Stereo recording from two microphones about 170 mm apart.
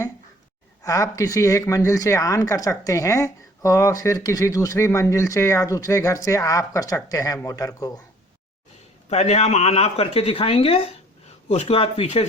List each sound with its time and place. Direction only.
0.8 s speech: 20° left (ahead or behind)
9.0 s speech: 40° left (ahead or behind)